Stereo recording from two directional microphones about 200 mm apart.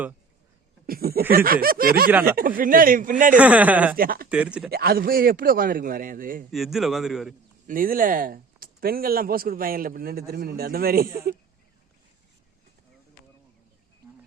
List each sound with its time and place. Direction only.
0.9 s speech: 50° right (ahead or behind)
3.3 s a man's voice: 5° right (ahead or behind)
3.9 s speech: 45° right (ahead or behind)
4.3 s a man's voice: 5° right (ahead or behind)
4.7 s speech: 50° right (ahead or behind)
6.5 s a man's voice: centre (ahead or behind)
7.7 s speech: 45° right (ahead or behind)